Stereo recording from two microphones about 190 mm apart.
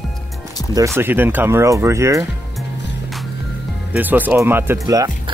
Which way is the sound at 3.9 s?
10° right (ahead or behind).